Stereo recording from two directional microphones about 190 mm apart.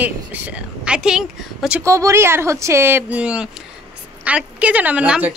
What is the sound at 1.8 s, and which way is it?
A woman's voice, 15° right (ahead or behind).